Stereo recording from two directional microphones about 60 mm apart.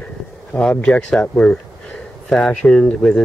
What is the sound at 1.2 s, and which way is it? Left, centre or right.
Speech, left.